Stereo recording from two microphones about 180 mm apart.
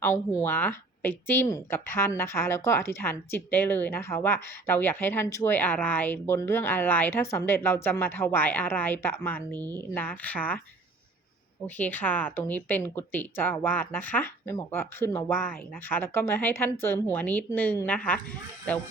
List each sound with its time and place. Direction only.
0.0 s speech: 15° left (ahead or behind)
11.6 s speech: 10° left (ahead or behind)